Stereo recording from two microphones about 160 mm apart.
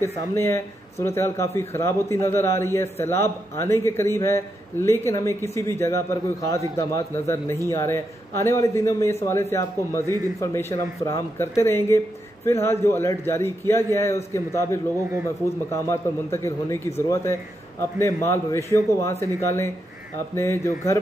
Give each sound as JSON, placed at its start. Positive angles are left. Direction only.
{"t": 0.0, "sound": "a man's voice", "side_deg": 15}